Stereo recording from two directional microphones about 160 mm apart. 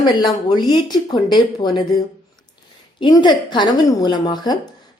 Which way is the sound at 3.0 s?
30° left (ahead or behind).